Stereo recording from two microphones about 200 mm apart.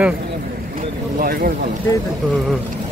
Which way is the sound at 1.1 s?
45° right (ahead or behind).